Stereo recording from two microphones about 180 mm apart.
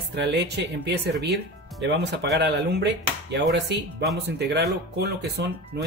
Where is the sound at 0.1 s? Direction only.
65° right (ahead or behind).